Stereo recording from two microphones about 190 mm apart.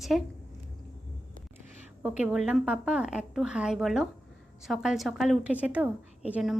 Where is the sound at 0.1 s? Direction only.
Centre (ahead or behind).